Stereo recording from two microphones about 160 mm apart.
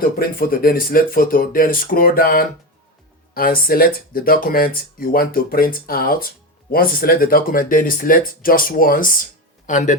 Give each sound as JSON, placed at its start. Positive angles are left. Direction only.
{"t": 0.0, "sound": "speech", "side_deg": 65}